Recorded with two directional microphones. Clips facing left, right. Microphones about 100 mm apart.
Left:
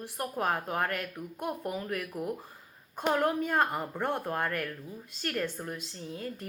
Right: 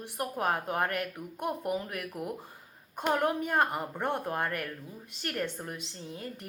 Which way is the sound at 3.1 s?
20° right (ahead or behind).